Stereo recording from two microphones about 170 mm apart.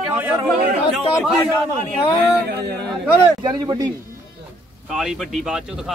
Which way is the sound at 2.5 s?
70° right (ahead or behind).